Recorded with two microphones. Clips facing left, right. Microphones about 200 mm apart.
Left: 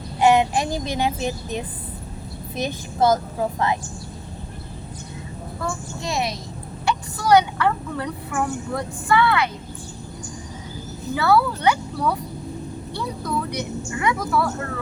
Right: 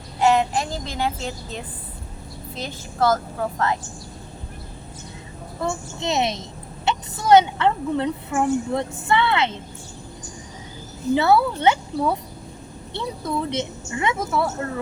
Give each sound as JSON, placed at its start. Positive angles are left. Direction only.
{"t": 0.2, "sound": "speech", "side_deg": 15}
{"t": 2.6, "sound": "a woman's voice", "side_deg": 20}
{"t": 5.5, "sound": "a woman's voice", "side_deg": -20}
{"t": 11.1, "sound": "a woman's voice", "side_deg": -25}